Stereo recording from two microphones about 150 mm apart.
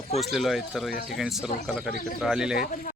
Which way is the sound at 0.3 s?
Centre (ahead or behind).